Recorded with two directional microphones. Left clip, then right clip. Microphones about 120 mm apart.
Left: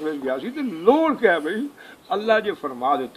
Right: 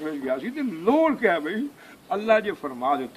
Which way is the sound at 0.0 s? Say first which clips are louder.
Left 2 dB; 30° right (ahead or behind).